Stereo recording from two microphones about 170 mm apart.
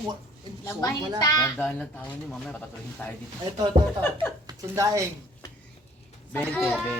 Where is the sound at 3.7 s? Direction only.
40° right (ahead or behind).